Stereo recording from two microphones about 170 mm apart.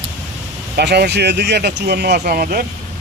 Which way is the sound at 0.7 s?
75° right (ahead or behind).